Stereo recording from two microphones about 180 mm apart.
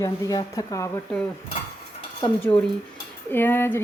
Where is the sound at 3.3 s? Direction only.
10° left (ahead or behind).